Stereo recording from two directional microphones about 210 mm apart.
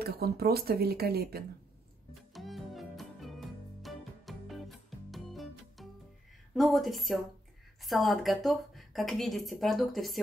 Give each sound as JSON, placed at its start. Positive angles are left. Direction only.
{"t": 0.0, "sound": "speech", "side_deg": -50}
{"t": 2.3, "sound": "music", "side_deg": 0}
{"t": 6.5, "sound": "a woman's voice", "side_deg": 0}